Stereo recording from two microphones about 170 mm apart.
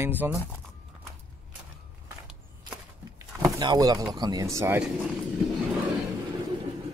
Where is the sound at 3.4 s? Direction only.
20° right (ahead or behind).